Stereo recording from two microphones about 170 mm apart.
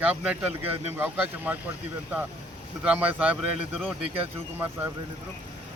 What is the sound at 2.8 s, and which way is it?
Speech, 10° right (ahead or behind).